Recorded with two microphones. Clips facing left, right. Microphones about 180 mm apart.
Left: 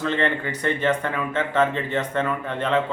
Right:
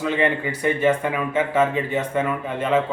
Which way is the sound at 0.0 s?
10° right (ahead or behind).